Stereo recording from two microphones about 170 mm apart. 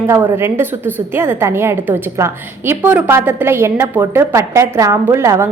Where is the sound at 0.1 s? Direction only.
15° right (ahead or behind).